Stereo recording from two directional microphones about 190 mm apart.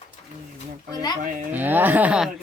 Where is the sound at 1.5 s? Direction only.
10° right (ahead or behind).